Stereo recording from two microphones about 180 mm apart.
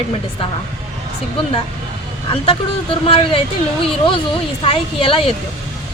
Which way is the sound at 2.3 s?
30° left (ahead or behind).